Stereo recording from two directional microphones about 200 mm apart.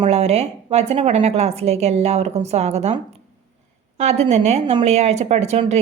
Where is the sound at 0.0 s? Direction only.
30° right (ahead or behind).